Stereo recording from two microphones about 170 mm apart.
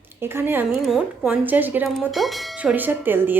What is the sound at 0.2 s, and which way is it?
A woman's voice, 15° right (ahead or behind).